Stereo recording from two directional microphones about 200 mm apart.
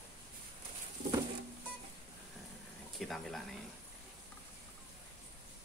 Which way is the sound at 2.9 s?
Centre (ahead or behind).